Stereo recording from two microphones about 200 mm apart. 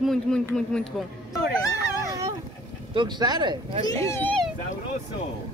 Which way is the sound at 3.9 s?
15° left (ahead or behind).